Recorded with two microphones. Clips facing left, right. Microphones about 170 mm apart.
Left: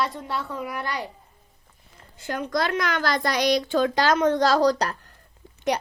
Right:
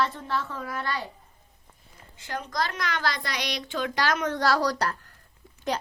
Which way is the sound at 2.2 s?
55° left (ahead or behind).